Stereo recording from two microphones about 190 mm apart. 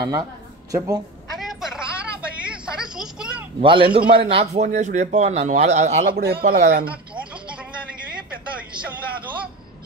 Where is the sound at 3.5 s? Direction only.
25° right (ahead or behind).